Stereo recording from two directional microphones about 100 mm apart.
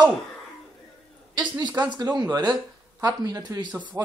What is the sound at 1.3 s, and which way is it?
Speech, 45° right (ahead or behind).